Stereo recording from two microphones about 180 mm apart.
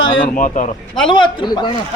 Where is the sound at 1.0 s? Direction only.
25° left (ahead or behind).